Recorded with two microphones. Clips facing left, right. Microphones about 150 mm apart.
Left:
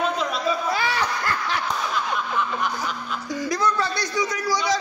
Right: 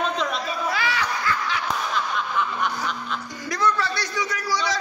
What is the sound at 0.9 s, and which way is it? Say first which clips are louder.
Snicker: left 1 dB; 45° left (ahead or behind).